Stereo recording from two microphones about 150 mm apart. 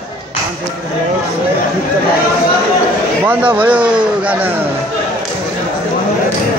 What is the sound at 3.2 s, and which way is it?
A man's voice, 10° right (ahead or behind).